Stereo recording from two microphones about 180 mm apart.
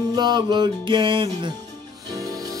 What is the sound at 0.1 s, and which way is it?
Music, 25° right (ahead or behind).